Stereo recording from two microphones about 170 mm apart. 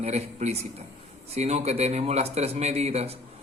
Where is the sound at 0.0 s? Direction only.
40° right (ahead or behind).